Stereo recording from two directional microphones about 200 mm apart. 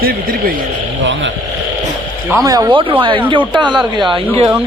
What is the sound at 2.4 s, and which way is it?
Speech, 20° right (ahead or behind).